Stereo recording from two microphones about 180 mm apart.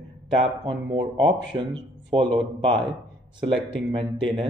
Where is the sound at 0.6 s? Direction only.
25° right (ahead or behind).